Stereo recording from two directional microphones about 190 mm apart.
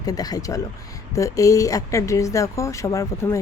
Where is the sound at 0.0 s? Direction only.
20° left (ahead or behind).